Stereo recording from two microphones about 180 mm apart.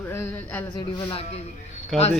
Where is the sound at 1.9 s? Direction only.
Centre (ahead or behind).